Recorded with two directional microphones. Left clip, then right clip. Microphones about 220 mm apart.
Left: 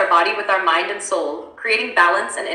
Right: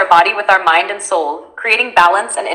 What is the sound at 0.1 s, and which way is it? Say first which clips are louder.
A woman's voice: right 6 dB; 20° right (ahead or behind).